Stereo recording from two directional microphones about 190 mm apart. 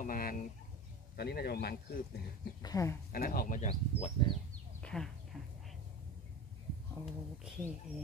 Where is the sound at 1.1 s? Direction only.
55° left (ahead or behind).